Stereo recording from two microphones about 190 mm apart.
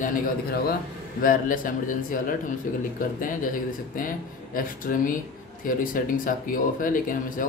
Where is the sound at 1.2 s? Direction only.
45° left (ahead or behind).